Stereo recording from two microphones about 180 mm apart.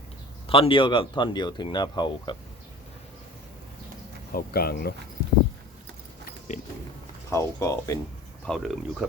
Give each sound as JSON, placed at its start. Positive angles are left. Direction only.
{"t": 0.4, "sound": "speech", "side_deg": 30}
{"t": 4.3, "sound": "speech", "side_deg": 55}
{"t": 6.5, "sound": "speech", "side_deg": 40}
{"t": 7.3, "sound": "speech", "side_deg": 15}
{"t": 8.4, "sound": "speech", "side_deg": 0}